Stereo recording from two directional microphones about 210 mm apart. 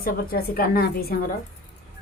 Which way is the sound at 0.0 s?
45° left (ahead or behind).